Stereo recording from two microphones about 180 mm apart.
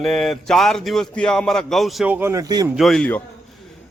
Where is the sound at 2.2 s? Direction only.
20° right (ahead or behind).